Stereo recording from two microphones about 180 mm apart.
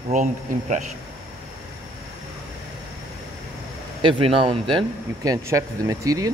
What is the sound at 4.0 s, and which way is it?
Speech, 30° right (ahead or behind).